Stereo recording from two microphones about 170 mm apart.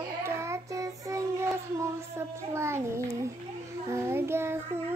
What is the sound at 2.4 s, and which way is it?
A child's voice, 15° right (ahead or behind).